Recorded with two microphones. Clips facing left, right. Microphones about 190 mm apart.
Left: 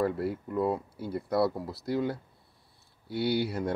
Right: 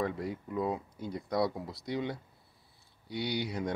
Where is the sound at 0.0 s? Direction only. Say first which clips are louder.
Left 5 dB; 5° left (ahead or behind).